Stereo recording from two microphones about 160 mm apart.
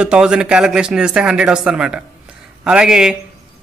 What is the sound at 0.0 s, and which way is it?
A man's voice, 5° right (ahead or behind).